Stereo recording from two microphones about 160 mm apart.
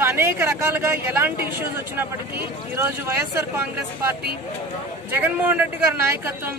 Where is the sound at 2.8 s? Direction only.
15° right (ahead or behind).